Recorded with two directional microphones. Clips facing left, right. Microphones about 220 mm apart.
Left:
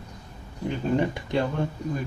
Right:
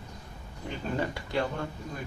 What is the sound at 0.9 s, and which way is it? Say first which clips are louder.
Speech: left 5 dB; 20° left (ahead or behind).